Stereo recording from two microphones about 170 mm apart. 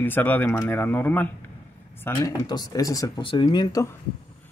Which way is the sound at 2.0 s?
20° left (ahead or behind).